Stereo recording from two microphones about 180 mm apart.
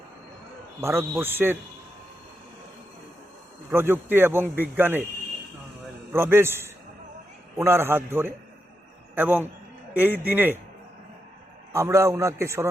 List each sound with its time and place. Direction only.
0.8 s a man's voice: 15° right (ahead or behind)
3.7 s a man's voice: 10° right (ahead or behind)
6.1 s a man's voice: 10° right (ahead or behind)
11.7 s a man's voice: 15° right (ahead or behind)